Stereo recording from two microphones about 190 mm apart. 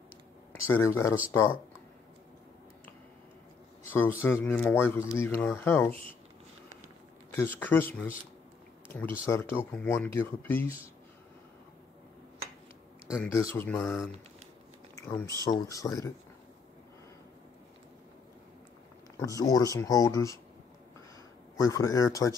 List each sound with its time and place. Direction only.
0.7 s speech: 15° left (ahead or behind)
3.8 s speech: 10° left (ahead or behind)
7.2 s speech: 10° left (ahead or behind)
9.2 s speech: 15° left (ahead or behind)
13.2 s speech: 15° left (ahead or behind)
19.1 s speech: 20° left (ahead or behind)
21.5 s speech: 20° left (ahead or behind)